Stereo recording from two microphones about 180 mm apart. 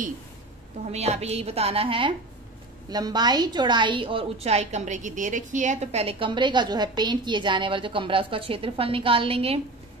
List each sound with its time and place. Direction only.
0.9 s a woman's voice: 35° right (ahead or behind)